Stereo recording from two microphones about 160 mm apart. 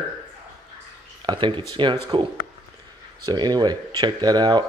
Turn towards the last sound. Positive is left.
turn(degrees=-25)  # may be behind; listen again after turning